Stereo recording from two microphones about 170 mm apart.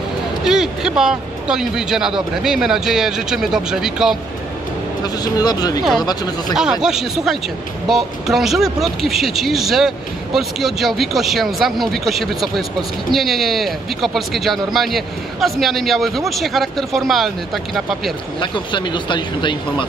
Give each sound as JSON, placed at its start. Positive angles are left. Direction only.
{"t": 0.5, "sound": "speech", "side_deg": -5}
{"t": 5.2, "sound": "speech", "side_deg": 25}
{"t": 6.5, "sound": "speech", "side_deg": -5}
{"t": 18.4, "sound": "speech", "side_deg": 25}